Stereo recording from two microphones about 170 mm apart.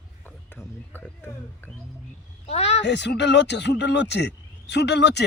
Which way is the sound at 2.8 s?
90° left.